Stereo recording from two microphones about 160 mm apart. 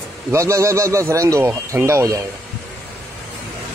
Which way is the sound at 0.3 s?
20° right (ahead or behind).